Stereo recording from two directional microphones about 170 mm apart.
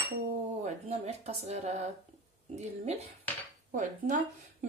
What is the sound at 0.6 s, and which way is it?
A woman's voice, 40° right (ahead or behind).